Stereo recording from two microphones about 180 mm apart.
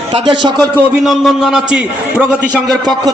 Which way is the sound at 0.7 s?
Centre (ahead or behind).